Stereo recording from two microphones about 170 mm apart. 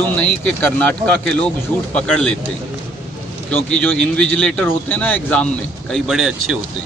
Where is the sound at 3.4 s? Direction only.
10° left (ahead or behind).